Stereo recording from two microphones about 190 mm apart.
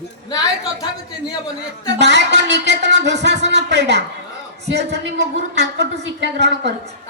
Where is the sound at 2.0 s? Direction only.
65° right (ahead or behind).